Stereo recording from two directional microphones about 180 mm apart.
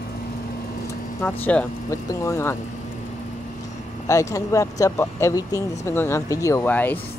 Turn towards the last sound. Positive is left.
turn(degrees=10)  # may be behind; listen again after turning